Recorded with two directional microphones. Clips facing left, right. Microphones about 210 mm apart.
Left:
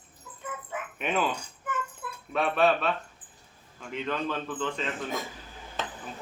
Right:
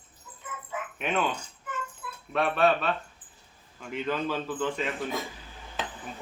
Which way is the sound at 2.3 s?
Centre (ahead or behind).